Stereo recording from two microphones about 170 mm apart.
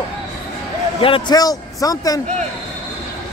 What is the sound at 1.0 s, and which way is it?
A man's voice, 30° left (ahead or behind).